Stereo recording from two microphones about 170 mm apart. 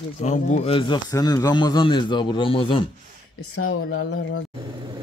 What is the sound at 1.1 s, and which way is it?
A man's voice, 20° left (ahead or behind).